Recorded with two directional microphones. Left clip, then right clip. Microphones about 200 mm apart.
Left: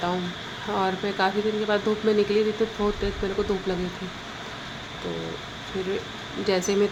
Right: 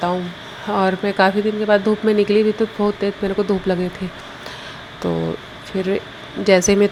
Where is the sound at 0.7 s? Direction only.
30° right (ahead or behind).